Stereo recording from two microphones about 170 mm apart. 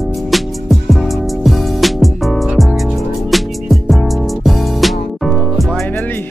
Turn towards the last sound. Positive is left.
turn(degrees=10)  # may be behind; listen again after turning